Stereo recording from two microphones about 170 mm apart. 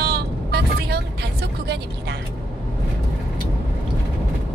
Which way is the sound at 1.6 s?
75° right (ahead or behind).